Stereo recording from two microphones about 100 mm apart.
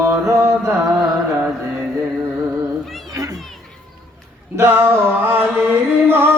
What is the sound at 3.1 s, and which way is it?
Children playing, 35° right (ahead or behind).